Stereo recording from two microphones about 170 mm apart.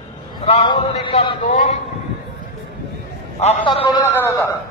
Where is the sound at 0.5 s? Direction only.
35° left (ahead or behind).